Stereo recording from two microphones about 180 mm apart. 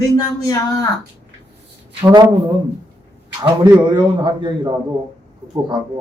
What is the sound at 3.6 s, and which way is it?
A man's voice, 25° right (ahead or behind).